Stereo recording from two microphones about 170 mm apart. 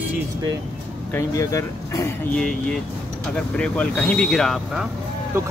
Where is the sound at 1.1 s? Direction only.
15° left (ahead or behind).